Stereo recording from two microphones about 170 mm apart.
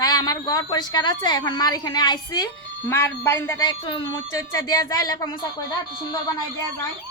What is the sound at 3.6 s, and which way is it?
Speech, 25° left (ahead or behind).